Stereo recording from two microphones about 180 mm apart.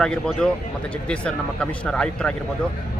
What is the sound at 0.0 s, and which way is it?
Speech, 5° left (ahead or behind).